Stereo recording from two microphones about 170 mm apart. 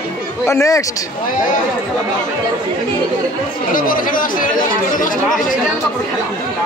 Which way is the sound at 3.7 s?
55° left (ahead or behind).